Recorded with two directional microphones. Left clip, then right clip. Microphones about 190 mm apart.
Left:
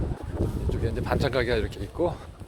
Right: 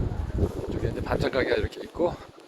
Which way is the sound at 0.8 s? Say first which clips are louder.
Left 1 dB; 20° left (ahead or behind).